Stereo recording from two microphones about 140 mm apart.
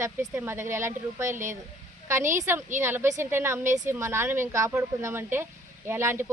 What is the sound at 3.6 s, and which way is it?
Speech, 60° right (ahead or behind).